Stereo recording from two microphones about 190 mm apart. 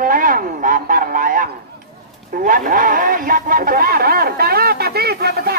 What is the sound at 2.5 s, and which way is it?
A man's voice, 45° right (ahead or behind).